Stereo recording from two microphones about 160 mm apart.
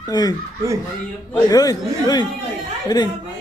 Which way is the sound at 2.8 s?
25° left (ahead or behind).